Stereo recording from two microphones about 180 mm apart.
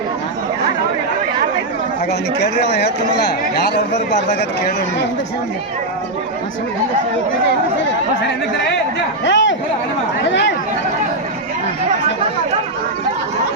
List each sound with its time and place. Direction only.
2.4 s a man's voice: 70° left (ahead or behind)
9.2 s chatter: 85° left